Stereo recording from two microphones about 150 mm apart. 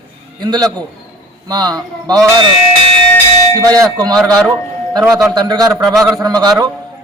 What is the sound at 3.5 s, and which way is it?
A man's voice, 25° right (ahead or behind).